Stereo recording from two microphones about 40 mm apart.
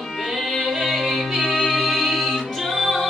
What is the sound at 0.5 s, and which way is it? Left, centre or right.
Music, centre.